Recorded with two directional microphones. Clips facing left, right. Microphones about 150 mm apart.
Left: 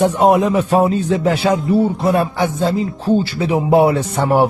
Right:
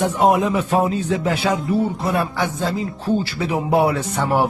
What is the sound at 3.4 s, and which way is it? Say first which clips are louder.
Speech: left 5 dB; 25° left (ahead or behind).